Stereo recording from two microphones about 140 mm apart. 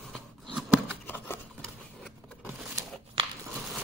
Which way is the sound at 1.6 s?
Centre (ahead or behind).